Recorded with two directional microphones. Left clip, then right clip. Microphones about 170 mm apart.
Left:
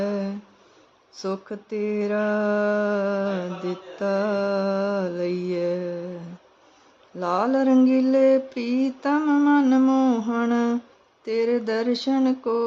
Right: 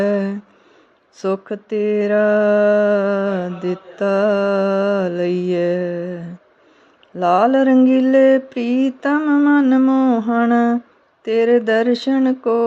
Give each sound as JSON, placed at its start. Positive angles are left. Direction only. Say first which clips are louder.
{"t": 0.0, "sound": "a sound", "louder": "right 9 dB", "side_deg": -30}
{"t": 1.2, "sound": "mantra", "louder": "right 8 dB", "side_deg": -30}
{"t": 7.2, "sound": "mantra", "louder": "right 9 dB", "side_deg": -25}